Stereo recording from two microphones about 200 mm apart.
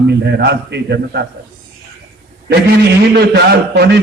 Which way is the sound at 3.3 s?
55° right (ahead or behind).